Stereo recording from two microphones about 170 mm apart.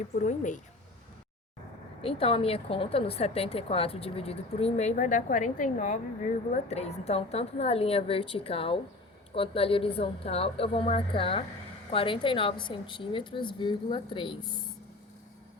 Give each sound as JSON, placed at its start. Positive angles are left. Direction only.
{"t": 0.2, "sound": "a woman's voice", "side_deg": 45}
{"t": 2.0, "sound": "a woman's voice", "side_deg": 35}